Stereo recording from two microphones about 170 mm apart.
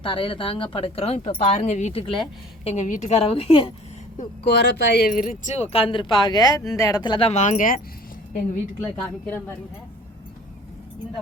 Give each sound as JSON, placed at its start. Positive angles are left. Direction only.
{"t": 0.0, "sound": "speech", "side_deg": 30}
{"t": 2.6, "sound": "speech", "side_deg": 45}
{"t": 4.4, "sound": "speech", "side_deg": 85}
{"t": 5.7, "sound": "speech", "side_deg": 30}
{"t": 8.8, "sound": "a woman's voice", "side_deg": 10}